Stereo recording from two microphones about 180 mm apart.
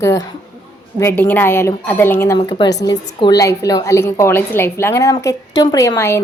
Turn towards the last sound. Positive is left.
turn(degrees=15)  # may be behind; listen again after turning